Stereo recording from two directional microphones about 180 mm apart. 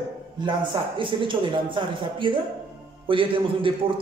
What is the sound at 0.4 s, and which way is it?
A man's voice, 25° right (ahead or behind).